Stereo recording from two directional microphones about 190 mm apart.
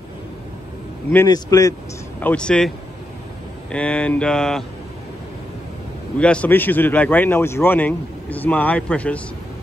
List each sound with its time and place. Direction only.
1.1 s a man's voice: 20° left (ahead or behind)
2.2 s mantra: 5° left (ahead or behind)
3.7 s mantra: 5° left (ahead or behind)
6.1 s speech: 5° left (ahead or behind)